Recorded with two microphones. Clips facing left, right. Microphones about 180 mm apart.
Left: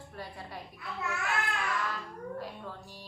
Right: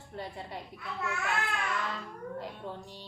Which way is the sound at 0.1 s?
25° right (ahead or behind).